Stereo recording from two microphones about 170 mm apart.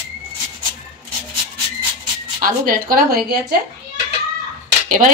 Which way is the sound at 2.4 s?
55° right (ahead or behind).